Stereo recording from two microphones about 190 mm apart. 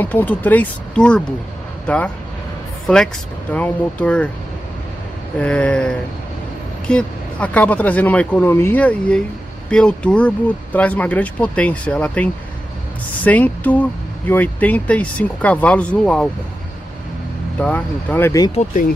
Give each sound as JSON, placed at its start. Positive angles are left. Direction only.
{"t": 0.0, "sound": "speech", "side_deg": 10}
{"t": 3.5, "sound": "speech", "side_deg": 5}
{"t": 5.4, "sound": "a sound", "side_deg": 5}
{"t": 6.9, "sound": "speech", "side_deg": 5}
{"t": 17.6, "sound": "speech", "side_deg": 10}
{"t": 18.5, "sound": "speech", "side_deg": 35}